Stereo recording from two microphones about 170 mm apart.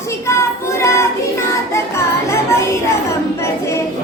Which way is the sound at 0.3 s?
15° left (ahead or behind).